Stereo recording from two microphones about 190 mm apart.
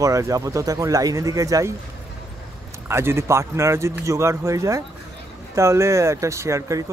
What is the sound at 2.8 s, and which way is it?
Speech, 15° right (ahead or behind).